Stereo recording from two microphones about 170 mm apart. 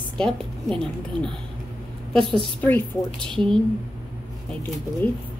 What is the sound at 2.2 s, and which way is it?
Speech, 30° right (ahead or behind).